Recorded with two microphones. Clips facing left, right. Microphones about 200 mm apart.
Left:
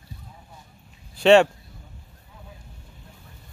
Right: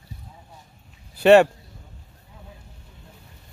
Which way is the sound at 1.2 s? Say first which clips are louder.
Right 2 dB; 5° right (ahead or behind).